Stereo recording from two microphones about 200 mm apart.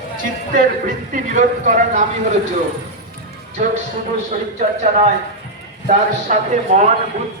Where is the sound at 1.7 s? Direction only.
40° right (ahead or behind).